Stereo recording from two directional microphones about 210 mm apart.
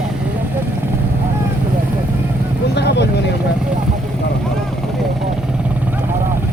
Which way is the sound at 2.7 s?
55° left (ahead or behind).